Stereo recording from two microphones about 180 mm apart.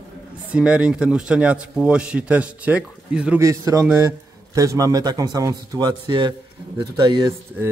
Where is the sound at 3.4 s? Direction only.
20° right (ahead or behind).